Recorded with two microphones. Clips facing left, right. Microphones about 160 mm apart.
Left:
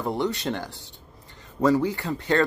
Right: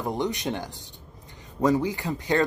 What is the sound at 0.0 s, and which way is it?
Speech, 15° right (ahead or behind).